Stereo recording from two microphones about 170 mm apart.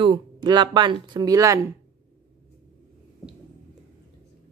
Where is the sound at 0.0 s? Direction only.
30° right (ahead or behind).